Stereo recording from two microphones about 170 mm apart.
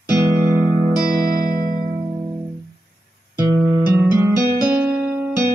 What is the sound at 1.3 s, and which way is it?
Music, 60° right (ahead or behind).